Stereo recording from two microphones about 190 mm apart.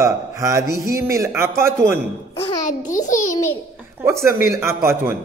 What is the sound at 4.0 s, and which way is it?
Speech, 15° right (ahead or behind).